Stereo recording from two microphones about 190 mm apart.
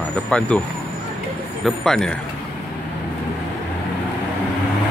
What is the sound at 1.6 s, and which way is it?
Speech, centre (ahead or behind).